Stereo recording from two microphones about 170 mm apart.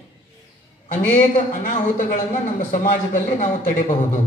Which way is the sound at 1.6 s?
45° left (ahead or behind).